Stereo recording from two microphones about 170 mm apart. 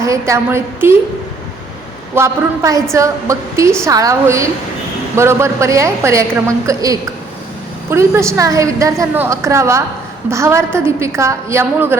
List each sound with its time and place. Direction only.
0.0 s a woman's voice: 20° right (ahead or behind)
2.1 s a woman's voice: 15° right (ahead or behind)